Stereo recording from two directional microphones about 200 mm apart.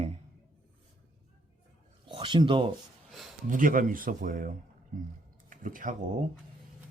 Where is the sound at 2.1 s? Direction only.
25° right (ahead or behind).